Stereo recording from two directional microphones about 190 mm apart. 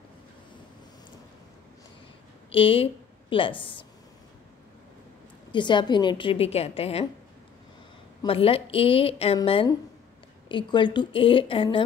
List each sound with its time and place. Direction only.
2.5 s a woman's voice: 30° left (ahead or behind)
5.5 s a woman's voice: 25° left (ahead or behind)
8.2 s a woman's voice: 30° left (ahead or behind)